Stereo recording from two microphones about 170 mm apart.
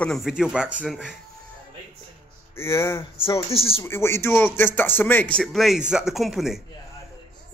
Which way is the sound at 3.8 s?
15° left (ahead or behind).